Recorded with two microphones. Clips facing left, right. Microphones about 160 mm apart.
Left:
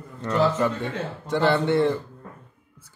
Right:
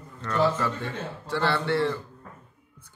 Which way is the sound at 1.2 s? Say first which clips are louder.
Left 5 dB; 20° left (ahead or behind).